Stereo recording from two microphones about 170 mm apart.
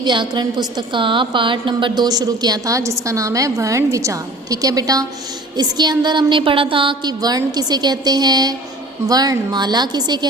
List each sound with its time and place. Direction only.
0.0 s a woman's voice: 25° right (ahead or behind)